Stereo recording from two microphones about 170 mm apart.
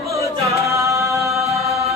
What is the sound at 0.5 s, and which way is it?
Music, 15° right (ahead or behind).